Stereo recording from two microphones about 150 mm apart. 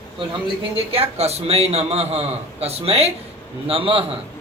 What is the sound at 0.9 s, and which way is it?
A man's voice, 45° right (ahead or behind).